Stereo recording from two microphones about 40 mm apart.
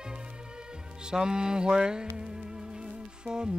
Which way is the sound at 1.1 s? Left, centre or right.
Centre.